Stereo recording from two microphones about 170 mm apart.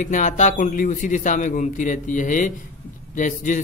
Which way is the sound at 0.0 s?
45° left (ahead or behind).